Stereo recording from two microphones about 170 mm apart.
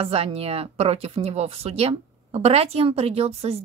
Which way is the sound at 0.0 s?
35° right (ahead or behind).